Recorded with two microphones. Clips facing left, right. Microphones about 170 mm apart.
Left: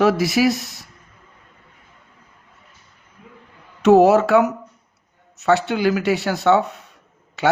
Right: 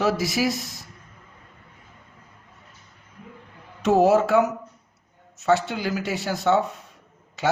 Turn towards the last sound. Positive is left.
turn(degrees=65)  # may be behind; listen again after turning